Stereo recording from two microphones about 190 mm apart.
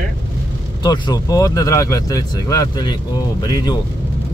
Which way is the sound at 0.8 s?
20° left (ahead or behind).